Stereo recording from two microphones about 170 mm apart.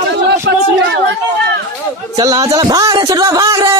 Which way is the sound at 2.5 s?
25° right (ahead or behind).